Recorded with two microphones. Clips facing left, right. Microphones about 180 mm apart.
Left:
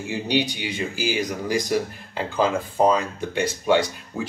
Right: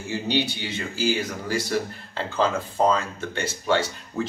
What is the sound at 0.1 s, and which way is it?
Speech, 15° left (ahead or behind).